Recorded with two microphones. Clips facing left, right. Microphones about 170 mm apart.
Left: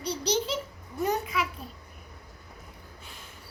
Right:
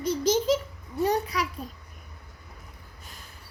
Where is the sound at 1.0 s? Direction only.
35° right (ahead or behind).